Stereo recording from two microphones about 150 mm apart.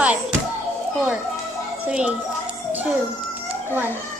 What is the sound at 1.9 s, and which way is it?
Speech, 5° right (ahead or behind).